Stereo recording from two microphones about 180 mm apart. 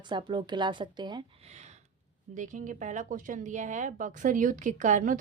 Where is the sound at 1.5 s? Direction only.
40° right (ahead or behind).